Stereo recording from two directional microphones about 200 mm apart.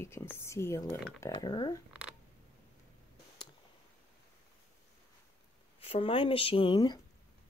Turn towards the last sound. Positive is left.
turn(degrees=20)  # may be behind; listen again after turning